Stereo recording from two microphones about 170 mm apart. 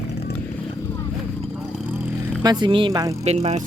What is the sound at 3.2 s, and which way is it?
Speech, 40° right (ahead or behind).